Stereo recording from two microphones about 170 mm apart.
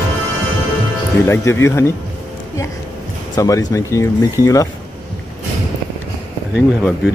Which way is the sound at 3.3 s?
20° left (ahead or behind).